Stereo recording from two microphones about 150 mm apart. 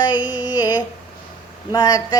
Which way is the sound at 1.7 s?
25° left (ahead or behind).